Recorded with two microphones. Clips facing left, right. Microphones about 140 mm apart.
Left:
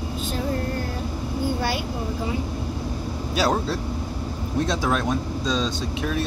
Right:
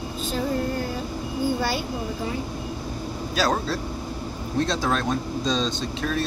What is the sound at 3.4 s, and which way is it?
Speech, 15° left (ahead or behind).